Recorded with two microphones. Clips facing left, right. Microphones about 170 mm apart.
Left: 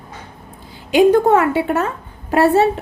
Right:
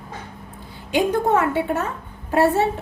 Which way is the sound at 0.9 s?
90° left.